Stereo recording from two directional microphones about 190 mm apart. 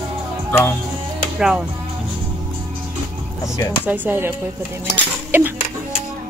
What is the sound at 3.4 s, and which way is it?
Speech, 15° left (ahead or behind).